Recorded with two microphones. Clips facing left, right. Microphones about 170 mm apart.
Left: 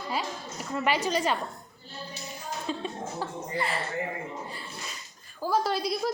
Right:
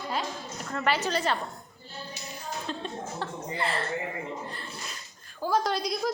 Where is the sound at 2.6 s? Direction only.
5° left (ahead or behind).